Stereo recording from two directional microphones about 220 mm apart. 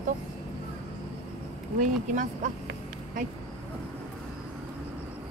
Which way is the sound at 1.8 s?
35° right (ahead or behind).